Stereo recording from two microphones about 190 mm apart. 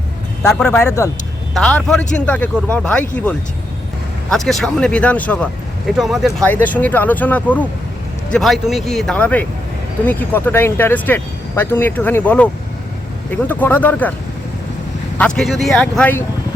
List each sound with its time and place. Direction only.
0.4 s speech: 5° left (ahead or behind)
0.8 s speech: 15° left (ahead or behind)
1.5 s speech: 5° left (ahead or behind)
4.3 s speech: centre (ahead or behind)
15.2 s speech: 5° left (ahead or behind)